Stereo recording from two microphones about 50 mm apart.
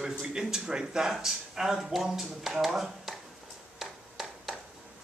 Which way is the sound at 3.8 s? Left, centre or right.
Centre.